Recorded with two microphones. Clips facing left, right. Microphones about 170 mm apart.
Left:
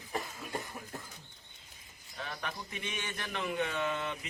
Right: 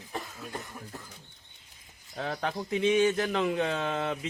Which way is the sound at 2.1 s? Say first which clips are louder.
Right 9 dB; 85° right.